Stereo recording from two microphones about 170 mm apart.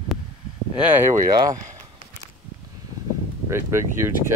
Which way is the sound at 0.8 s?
10° right (ahead or behind).